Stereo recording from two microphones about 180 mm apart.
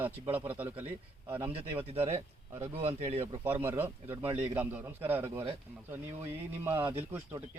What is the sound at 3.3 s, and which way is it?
Speech, 15° right (ahead or behind).